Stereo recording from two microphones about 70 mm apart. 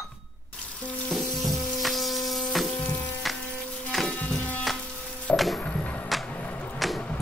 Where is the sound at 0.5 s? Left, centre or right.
Centre.